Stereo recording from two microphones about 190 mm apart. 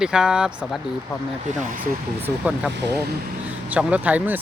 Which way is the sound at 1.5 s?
40° right (ahead or behind).